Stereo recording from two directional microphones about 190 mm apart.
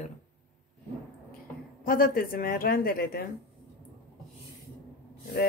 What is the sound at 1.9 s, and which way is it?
A woman's voice, 50° left (ahead or behind).